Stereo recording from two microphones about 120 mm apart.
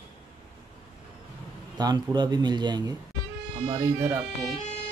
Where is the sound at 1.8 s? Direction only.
35° right (ahead or behind).